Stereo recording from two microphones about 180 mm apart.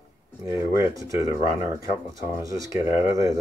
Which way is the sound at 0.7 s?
15° right (ahead or behind).